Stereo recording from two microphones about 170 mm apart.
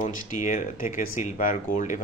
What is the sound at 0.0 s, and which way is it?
Speech, 50° left (ahead or behind).